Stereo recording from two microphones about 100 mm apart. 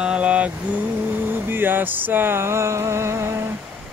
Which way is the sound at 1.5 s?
20° right (ahead or behind).